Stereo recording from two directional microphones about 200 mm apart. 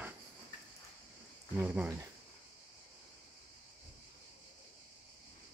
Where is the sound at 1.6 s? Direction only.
10° right (ahead or behind).